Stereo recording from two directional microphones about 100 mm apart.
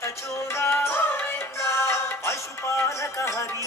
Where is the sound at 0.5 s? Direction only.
25° left (ahead or behind).